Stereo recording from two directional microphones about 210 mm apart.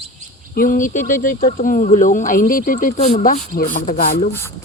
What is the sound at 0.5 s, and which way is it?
Speech, 40° left (ahead or behind).